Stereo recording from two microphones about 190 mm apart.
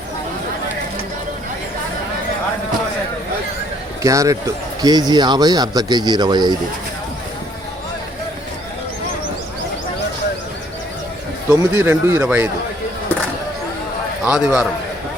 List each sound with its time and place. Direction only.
4.0 s speech: 15° right (ahead or behind)
11.4 s speech: 15° right (ahead or behind)
14.3 s speech: 5° right (ahead or behind)